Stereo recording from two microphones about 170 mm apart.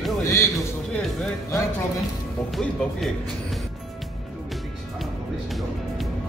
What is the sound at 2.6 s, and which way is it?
Speech, centre (ahead or behind).